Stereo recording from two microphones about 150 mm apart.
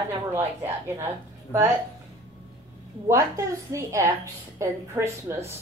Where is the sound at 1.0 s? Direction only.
15° right (ahead or behind).